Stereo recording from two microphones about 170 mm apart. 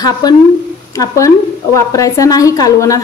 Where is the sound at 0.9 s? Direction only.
20° left (ahead or behind).